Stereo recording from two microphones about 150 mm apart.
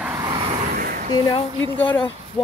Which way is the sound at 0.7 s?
80° right.